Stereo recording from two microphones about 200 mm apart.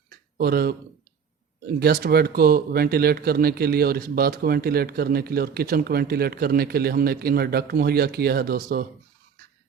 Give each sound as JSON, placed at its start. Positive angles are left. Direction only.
{"t": 0.3, "sound": "speech", "side_deg": -50}
{"t": 1.8, "sound": "speech", "side_deg": -50}